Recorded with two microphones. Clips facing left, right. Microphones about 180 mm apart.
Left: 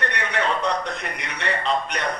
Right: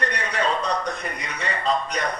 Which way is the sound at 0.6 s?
75° left (ahead or behind).